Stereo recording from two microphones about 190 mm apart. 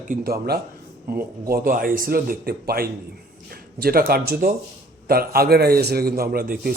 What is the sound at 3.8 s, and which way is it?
A man's voice, 50° right (ahead or behind).